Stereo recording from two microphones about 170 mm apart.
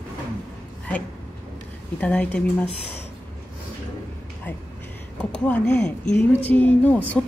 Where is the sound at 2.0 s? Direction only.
10° left (ahead or behind).